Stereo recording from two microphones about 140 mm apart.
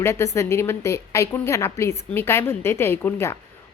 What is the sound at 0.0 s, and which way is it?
A woman's voice, 20° left (ahead or behind).